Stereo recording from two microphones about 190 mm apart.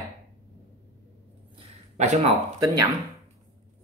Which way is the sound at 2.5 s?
20° right (ahead or behind).